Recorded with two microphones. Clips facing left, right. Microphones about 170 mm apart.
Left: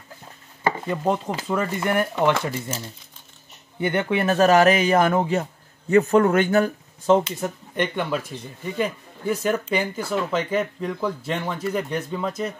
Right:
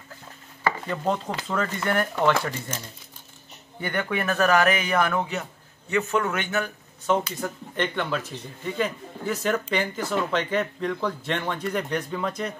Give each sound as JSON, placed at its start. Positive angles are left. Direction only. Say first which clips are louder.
{"t": 0.7, "sound": "speech", "louder": "left 3 dB", "side_deg": 15}
{"t": 3.8, "sound": "speech", "louder": "left 5 dB", "side_deg": 25}
{"t": 7.2, "sound": "speech", "louder": "left 3 dB", "side_deg": 25}
{"t": 7.8, "sound": "speech", "louder": "left 2 dB", "side_deg": 10}